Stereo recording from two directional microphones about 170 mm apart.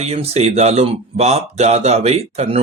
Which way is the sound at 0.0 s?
40° right (ahead or behind).